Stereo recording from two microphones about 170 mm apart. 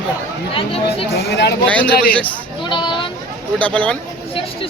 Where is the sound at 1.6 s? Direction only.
10° left (ahead or behind).